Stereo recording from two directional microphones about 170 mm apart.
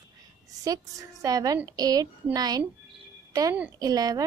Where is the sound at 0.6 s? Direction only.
20° right (ahead or behind).